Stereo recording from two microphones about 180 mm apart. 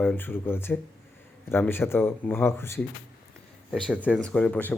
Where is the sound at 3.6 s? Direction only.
Centre (ahead or behind).